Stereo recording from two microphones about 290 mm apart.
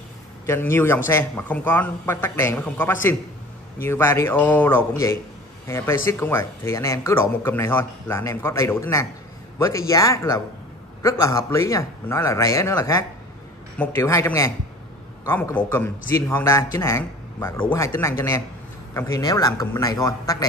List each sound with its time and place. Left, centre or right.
0.5 s speech: centre